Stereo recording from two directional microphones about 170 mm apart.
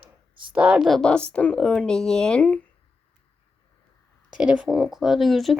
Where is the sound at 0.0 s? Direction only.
30° right (ahead or behind).